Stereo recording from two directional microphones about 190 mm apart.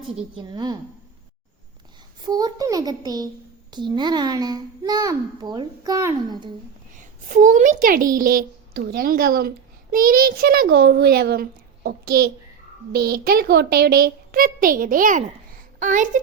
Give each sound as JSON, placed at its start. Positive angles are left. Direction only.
{"t": 0.3, "sound": "a child's voice", "side_deg": -20}
{"t": 2.2, "sound": "a child's voice", "side_deg": -20}
{"t": 6.9, "sound": "a child's voice", "side_deg": -40}